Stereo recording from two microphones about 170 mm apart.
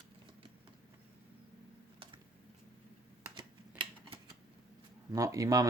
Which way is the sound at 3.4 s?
30° right (ahead or behind).